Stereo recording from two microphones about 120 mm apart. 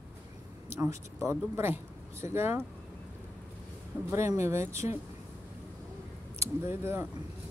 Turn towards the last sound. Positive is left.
turn(degrees=-20)  # may be behind; listen again after turning